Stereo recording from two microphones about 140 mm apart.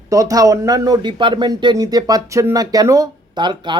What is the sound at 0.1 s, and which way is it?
Speech, 25° right (ahead or behind).